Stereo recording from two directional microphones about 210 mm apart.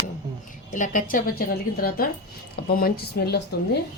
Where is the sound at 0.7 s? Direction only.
40° left (ahead or behind).